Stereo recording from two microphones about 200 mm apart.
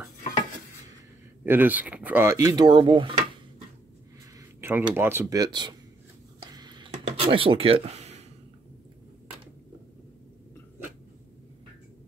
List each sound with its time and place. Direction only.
1.4 s speech: 10° right (ahead or behind)
4.6 s a sound: 10° right (ahead or behind)
4.9 s speech: 10° right (ahead or behind)
6.5 s computer keyboard: 20° right (ahead or behind)
7.1 s speech: 30° right (ahead or behind)